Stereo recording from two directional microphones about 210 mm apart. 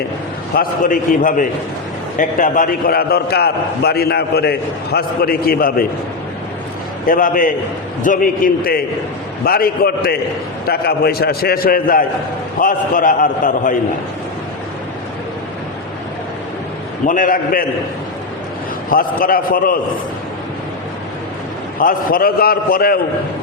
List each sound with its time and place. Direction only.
0.5 s a man's voice: 40° left (ahead or behind)
7.1 s a man's voice: 40° left (ahead or behind)
17.1 s a man's voice: 40° left (ahead or behind)
18.9 s a man's voice: 40° left (ahead or behind)
21.8 s a man's voice: 40° left (ahead or behind)